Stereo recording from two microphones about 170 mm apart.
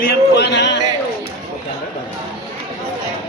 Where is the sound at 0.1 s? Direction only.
75° left (ahead or behind).